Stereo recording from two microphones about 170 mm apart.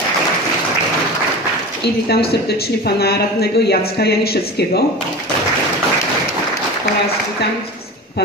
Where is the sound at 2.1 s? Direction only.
70° left (ahead or behind).